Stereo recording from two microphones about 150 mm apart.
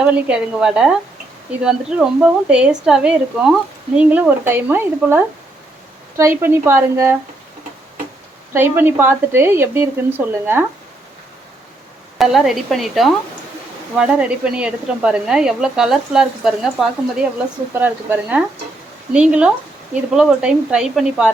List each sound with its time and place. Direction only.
0.0 s speech: 5° right (ahead or behind)
8.5 s speech: 15° right (ahead or behind)
12.1 s speech: centre (ahead or behind)